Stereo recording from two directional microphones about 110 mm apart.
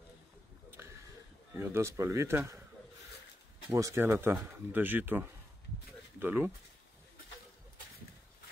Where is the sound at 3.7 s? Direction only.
25° right (ahead or behind).